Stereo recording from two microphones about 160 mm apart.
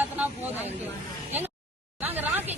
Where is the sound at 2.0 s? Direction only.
10° right (ahead or behind).